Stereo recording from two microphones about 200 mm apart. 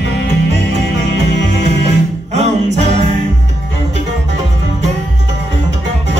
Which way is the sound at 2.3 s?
35° right (ahead or behind).